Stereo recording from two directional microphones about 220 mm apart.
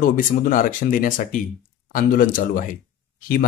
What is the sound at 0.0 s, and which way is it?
Speech, 40° left (ahead or behind).